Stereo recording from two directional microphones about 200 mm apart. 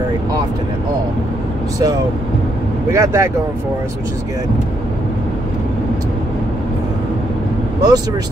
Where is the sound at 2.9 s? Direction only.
15° right (ahead or behind).